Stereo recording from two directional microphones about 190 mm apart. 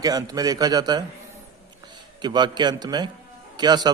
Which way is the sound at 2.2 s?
25° right (ahead or behind).